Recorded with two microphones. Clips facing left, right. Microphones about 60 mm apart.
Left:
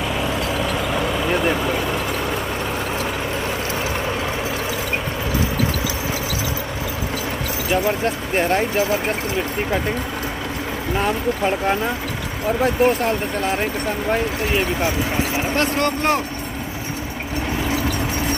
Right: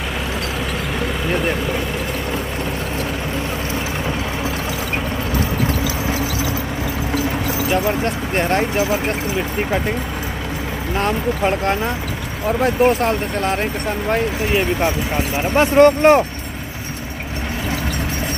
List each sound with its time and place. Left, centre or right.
7.7 s speech: centre
8.7 s speech: centre
11.6 s speech: centre
15.5 s speech: centre